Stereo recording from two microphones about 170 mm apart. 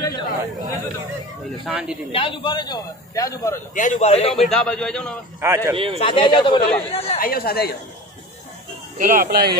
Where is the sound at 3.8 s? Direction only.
45° left (ahead or behind).